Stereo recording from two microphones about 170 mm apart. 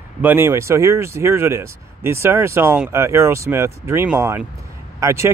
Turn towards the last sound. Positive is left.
turn(degrees=-15)  # may be behind; listen again after turning